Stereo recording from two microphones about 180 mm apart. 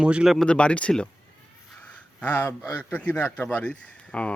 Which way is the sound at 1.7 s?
10° left (ahead or behind).